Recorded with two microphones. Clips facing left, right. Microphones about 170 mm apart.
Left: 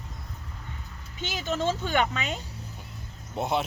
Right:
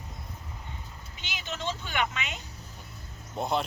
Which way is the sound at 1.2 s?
40° left (ahead or behind).